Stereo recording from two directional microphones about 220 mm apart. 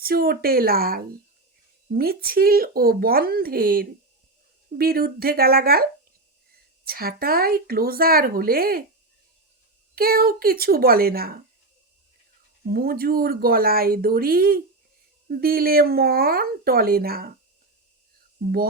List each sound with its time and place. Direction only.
0.0 s speech: 45° right (ahead or behind)
9.9 s speech: 40° right (ahead or behind)
12.7 s speech: 45° right (ahead or behind)